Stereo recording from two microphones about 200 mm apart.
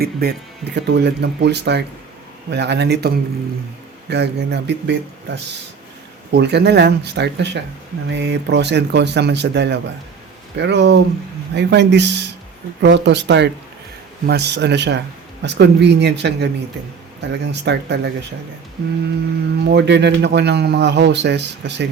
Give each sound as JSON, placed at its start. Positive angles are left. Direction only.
{"t": 0.0, "sound": "speech", "side_deg": -50}
{"t": 4.1, "sound": "speech", "side_deg": -60}
{"t": 19.6, "sound": "speech", "side_deg": -60}